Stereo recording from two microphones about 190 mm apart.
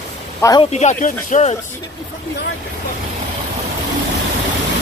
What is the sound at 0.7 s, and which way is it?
Speech, 40° left (ahead or behind).